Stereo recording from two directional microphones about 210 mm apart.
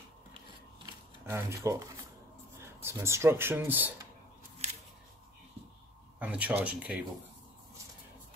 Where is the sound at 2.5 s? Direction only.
10° right (ahead or behind).